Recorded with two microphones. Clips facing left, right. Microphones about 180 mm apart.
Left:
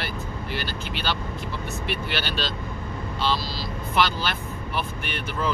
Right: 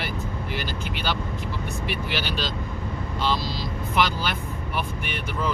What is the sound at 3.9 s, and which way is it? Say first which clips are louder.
Speech: even; 15° right (ahead or behind).